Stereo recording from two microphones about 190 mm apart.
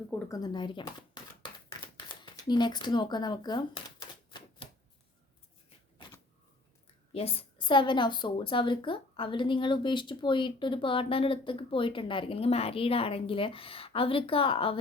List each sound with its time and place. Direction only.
0.1 s a woman's voice: 20° left (ahead or behind)
2.5 s speech: 25° left (ahead or behind)
7.1 s a woman's voice: 30° left (ahead or behind)